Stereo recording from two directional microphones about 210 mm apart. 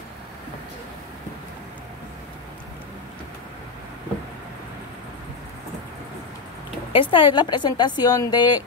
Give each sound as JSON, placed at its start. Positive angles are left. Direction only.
{"t": 6.9, "sound": "a woman's voice", "side_deg": 25}